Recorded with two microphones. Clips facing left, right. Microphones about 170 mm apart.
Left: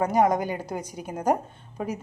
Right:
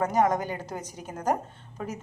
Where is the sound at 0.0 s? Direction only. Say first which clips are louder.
Left 2 dB; 10° left (ahead or behind).